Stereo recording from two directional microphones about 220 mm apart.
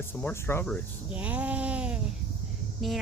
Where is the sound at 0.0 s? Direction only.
10° left (ahead or behind).